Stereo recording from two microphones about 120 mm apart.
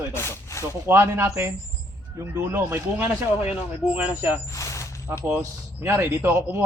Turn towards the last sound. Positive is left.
turn(degrees=-20)  # may be behind; listen again after turning